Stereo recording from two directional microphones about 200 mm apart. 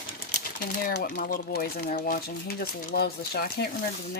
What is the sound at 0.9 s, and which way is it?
Speech, 55° left (ahead or behind).